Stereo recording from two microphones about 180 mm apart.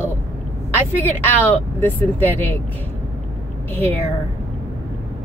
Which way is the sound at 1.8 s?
10° left (ahead or behind).